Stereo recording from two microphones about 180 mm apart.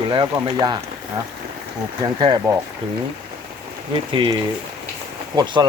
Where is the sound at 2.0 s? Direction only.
25° right (ahead or behind).